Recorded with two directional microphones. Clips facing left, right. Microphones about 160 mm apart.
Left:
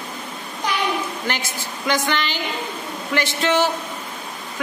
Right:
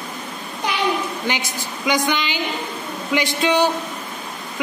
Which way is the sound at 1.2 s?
15° right (ahead or behind).